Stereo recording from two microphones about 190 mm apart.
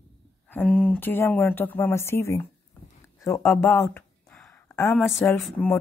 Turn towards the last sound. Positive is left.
turn(degrees=10)  # may be behind; listen again after turning